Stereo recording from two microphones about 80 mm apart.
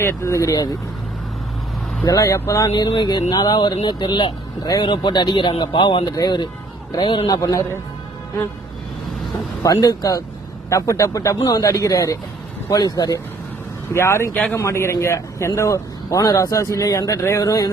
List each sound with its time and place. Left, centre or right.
0.0 s speech: left
2.0 s speech: left
2.7 s speech: left
6.1 s speech: left
9.6 s speech: left
13.9 s speech: left
17.2 s speech: left